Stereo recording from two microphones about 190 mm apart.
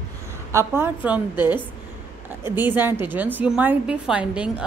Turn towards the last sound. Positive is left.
turn(degrees=-5)  # may be behind; listen again after turning